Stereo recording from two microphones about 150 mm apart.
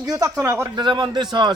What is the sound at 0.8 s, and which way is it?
Speech, 30° right (ahead or behind).